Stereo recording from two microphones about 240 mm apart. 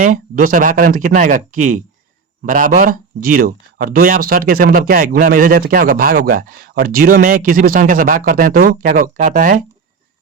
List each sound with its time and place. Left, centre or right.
0.0 s speech: right